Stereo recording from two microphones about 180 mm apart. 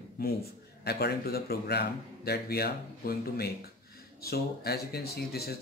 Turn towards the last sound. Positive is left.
turn(degrees=60)  # may be behind; listen again after turning